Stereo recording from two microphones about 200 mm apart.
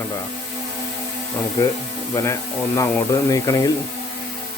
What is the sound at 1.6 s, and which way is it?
Speech, 15° left (ahead or behind).